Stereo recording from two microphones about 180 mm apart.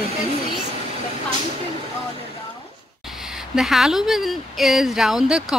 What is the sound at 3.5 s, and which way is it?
Speech, centre (ahead or behind).